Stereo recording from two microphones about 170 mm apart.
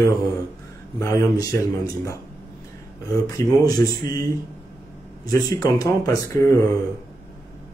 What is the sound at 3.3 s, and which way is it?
Speech, 20° left (ahead or behind).